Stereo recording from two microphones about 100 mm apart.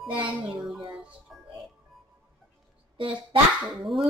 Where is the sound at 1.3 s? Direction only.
Centre (ahead or behind).